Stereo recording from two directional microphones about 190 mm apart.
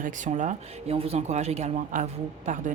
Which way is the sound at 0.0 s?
40° right (ahead or behind).